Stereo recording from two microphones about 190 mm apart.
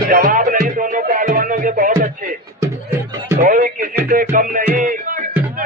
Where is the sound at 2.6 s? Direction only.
15° right (ahead or behind).